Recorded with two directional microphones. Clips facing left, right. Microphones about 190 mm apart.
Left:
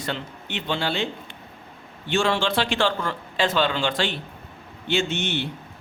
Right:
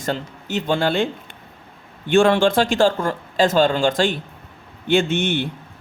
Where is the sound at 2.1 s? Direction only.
55° right (ahead or behind).